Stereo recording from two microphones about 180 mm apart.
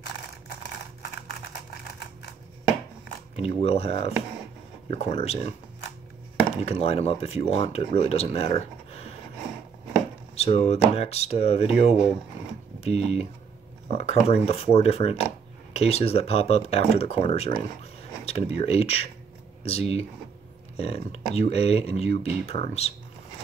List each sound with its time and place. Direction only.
3.3 s speech: 35° left (ahead or behind)
6.5 s speech: 35° left (ahead or behind)
10.3 s speech: 35° left (ahead or behind)